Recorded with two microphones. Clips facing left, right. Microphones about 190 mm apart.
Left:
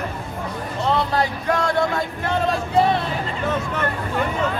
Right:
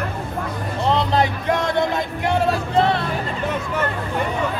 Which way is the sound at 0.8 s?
20° right (ahead or behind).